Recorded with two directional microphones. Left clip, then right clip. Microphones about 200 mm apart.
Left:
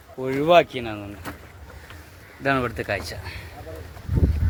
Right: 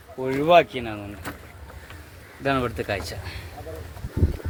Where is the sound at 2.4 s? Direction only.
10° left (ahead or behind).